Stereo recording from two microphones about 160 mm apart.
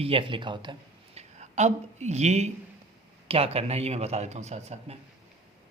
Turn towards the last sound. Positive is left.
turn(degrees=-45)  # may be behind; listen again after turning